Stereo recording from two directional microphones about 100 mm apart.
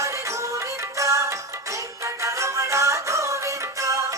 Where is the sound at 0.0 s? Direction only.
30° right (ahead or behind).